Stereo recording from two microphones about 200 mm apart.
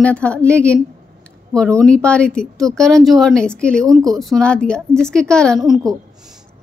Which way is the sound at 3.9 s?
15° right (ahead or behind).